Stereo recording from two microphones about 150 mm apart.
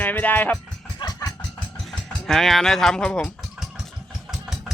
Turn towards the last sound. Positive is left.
turn(degrees=0)  # may be behind; listen again after turning